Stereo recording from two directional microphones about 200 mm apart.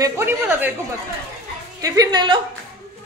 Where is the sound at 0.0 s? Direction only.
10° right (ahead or behind).